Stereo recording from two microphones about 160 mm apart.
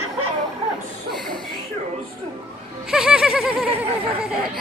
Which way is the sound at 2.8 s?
5° right (ahead or behind).